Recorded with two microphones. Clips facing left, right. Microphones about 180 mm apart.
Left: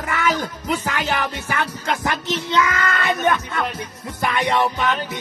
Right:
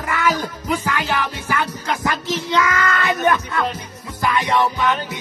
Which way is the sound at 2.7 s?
25° left (ahead or behind).